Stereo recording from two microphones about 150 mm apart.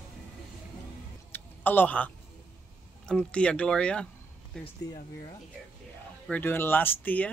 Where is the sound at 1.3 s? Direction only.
10° left (ahead or behind).